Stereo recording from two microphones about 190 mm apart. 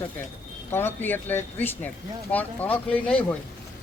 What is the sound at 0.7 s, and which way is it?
Speech, 10° left (ahead or behind).